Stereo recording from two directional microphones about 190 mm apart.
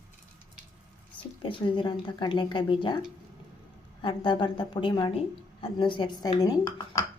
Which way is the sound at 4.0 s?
25° left (ahead or behind).